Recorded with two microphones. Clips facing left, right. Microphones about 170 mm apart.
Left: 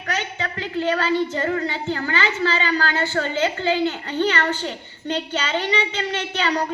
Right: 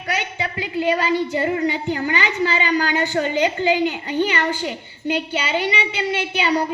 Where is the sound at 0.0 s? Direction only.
10° right (ahead or behind).